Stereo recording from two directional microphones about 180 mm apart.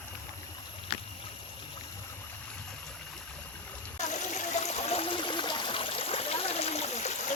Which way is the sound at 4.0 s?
40° left (ahead or behind).